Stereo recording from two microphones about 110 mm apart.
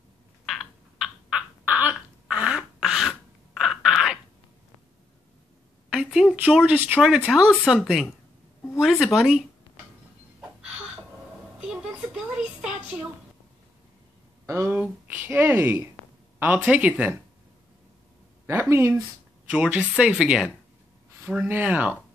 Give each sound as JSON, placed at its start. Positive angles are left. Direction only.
{"t": 0.5, "sound": "a sound", "side_deg": 0}
{"t": 1.7, "sound": "throat clearing", "side_deg": -15}
{"t": 5.9, "sound": "a sound", "side_deg": -5}
{"t": 6.3, "sound": "speech", "side_deg": -15}
{"t": 11.6, "sound": "a woman's voice", "side_deg": -10}
{"t": 14.4, "sound": "speech", "side_deg": -25}
{"t": 18.5, "sound": "speech", "side_deg": -25}
{"t": 19.5, "sound": "speech", "side_deg": -10}